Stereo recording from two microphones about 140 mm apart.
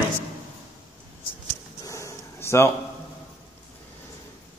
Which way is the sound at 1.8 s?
20° left (ahead or behind).